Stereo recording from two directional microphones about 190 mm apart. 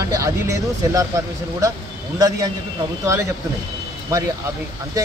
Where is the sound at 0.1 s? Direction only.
15° right (ahead or behind).